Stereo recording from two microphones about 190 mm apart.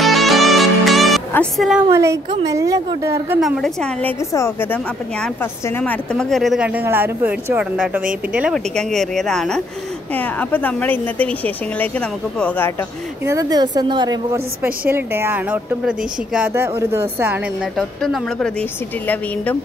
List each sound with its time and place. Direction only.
0.0 s music: centre (ahead or behind)
1.3 s a woman's voice: 5° left (ahead or behind); by 3.3 s 15° right (ahead or behind)
3.3 s a woman's voice: centre (ahead or behind)
4.2 s a woman's voice: 15° left (ahead or behind)
13.2 s a woman's voice: 15° right (ahead or behind)
17.7 s a woman's voice: centre (ahead or behind)